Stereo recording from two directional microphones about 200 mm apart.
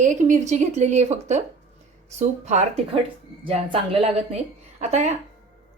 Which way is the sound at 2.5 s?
30° right (ahead or behind).